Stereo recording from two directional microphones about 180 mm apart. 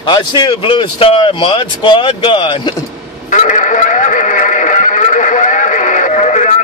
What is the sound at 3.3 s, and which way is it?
Music, 45° left (ahead or behind).